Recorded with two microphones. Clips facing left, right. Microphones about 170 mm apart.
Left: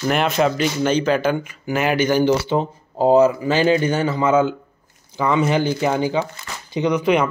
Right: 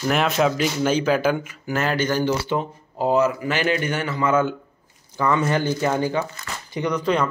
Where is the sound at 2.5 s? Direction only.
30° left (ahead or behind).